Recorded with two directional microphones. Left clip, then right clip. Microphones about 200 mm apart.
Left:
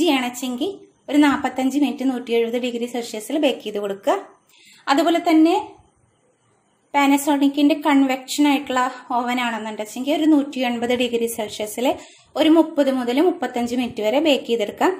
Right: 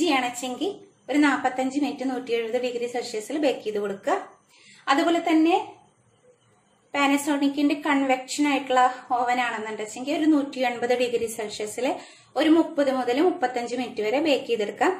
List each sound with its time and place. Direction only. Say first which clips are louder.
0.0 s a sound: left 3 dB; 35° left (ahead or behind)
1.0 s a woman's voice: left 4 dB; 40° left (ahead or behind)
6.9 s a woman's voice: left 5 dB; 40° left (ahead or behind)